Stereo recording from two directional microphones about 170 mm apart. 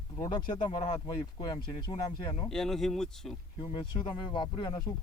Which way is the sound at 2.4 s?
5° left (ahead or behind).